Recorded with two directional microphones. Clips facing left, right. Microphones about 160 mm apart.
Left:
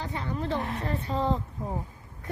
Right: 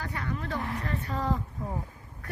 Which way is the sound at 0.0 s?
25° left (ahead or behind).